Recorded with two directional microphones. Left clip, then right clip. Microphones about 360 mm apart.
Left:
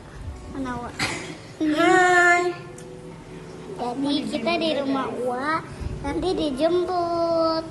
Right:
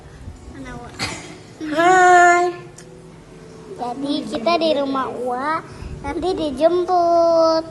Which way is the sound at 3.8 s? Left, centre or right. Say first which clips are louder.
Right 2 dB; centre.